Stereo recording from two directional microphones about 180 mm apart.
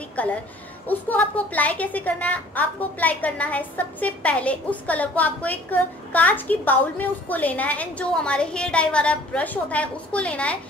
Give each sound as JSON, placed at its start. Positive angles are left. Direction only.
{"t": 0.2, "sound": "a woman's voice", "side_deg": 10}